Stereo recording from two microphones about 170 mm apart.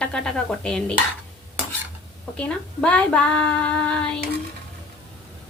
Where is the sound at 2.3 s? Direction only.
5° left (ahead or behind).